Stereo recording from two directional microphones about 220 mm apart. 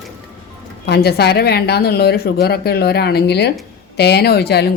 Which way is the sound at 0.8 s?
45° left (ahead or behind).